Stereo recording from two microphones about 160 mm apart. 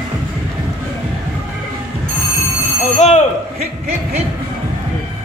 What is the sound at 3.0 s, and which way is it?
Speech, 45° left (ahead or behind).